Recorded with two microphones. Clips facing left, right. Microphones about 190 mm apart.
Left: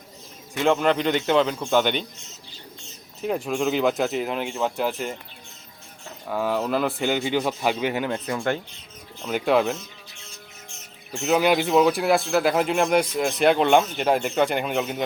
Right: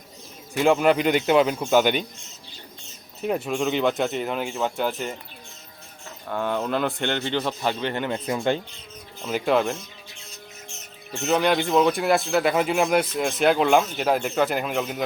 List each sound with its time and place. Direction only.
0.5 s speech: 10° right (ahead or behind)
3.2 s speech: centre (ahead or behind)
6.2 s speech: 5° left (ahead or behind)
8.3 s speech: 20° right (ahead or behind)
9.2 s speech: centre (ahead or behind)
11.1 s speech: 5° left (ahead or behind)